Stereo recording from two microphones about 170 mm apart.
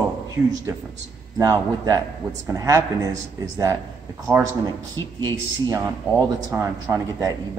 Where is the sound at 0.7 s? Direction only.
20° right (ahead or behind).